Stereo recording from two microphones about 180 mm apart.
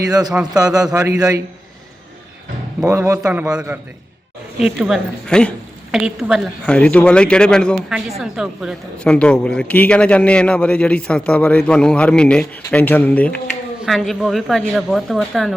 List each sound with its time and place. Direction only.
0.1 s a man's voice: 20° right (ahead or behind)
2.8 s a man's voice: 15° right (ahead or behind); by 15.5 s centre (ahead or behind)